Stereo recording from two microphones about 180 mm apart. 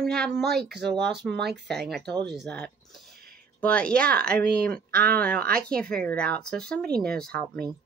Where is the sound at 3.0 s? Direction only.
60° right (ahead or behind).